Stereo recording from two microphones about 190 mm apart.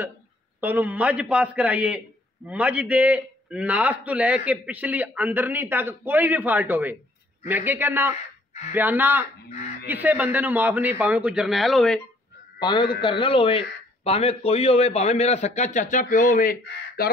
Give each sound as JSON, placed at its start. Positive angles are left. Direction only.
{"t": 0.6, "sound": "a man's voice", "side_deg": -10}
{"t": 9.5, "sound": "speech", "side_deg": 35}
{"t": 9.8, "sound": "a man's voice", "side_deg": -10}
{"t": 12.5, "sound": "a man's voice", "side_deg": 25}